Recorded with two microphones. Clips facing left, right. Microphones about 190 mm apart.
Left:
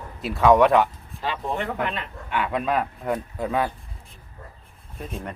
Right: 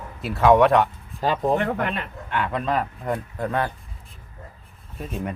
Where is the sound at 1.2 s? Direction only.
40° right (ahead or behind).